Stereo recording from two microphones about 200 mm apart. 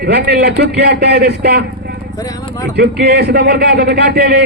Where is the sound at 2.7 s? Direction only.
55° right (ahead or behind).